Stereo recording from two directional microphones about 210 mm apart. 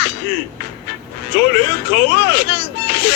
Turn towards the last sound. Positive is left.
turn(degrees=55)  # may be behind; listen again after turning